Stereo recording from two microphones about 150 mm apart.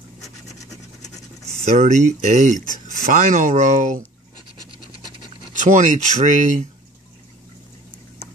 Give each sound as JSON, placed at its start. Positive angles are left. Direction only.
{"t": 1.6, "sound": "speech", "side_deg": -50}
{"t": 5.5, "sound": "speech", "side_deg": -55}